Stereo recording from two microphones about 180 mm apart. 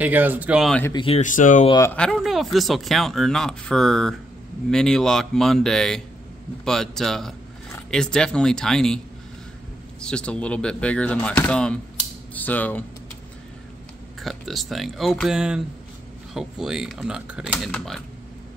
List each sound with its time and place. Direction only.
0.0 s speech: 10° right (ahead or behind)
0.9 s speech: 30° left (ahead or behind)
1.2 s speech: 45° left (ahead or behind)
1.7 s speech: 15° left (ahead or behind)
2.0 s speech: 5° left (ahead or behind)
11.4 s typewriter: 5° left (ahead or behind)
14.2 s speech: centre (ahead or behind)